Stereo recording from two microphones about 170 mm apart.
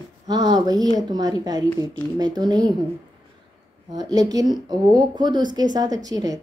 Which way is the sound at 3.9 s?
25° right (ahead or behind).